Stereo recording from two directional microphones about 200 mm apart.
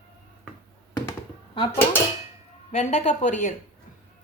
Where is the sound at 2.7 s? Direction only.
35° left (ahead or behind).